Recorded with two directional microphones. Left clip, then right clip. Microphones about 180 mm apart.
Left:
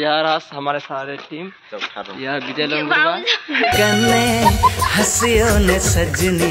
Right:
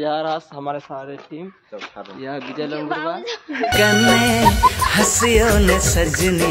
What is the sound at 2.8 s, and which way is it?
Speech, 15° right (ahead or behind).